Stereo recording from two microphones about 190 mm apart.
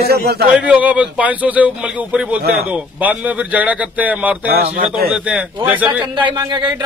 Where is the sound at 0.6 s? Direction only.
5° right (ahead or behind).